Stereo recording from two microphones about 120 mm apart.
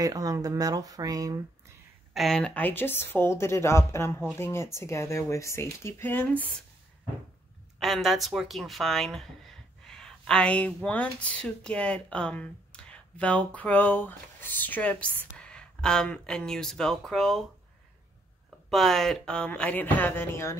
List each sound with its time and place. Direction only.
0.0 s speech: 30° right (ahead or behind)
2.1 s speech: 5° left (ahead or behind)
7.8 s speech: centre (ahead or behind)
18.7 s speech: centre (ahead or behind); by 20.5 s 20° left (ahead or behind)